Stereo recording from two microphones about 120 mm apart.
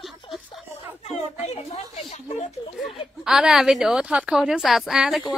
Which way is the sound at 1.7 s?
60° left (ahead or behind).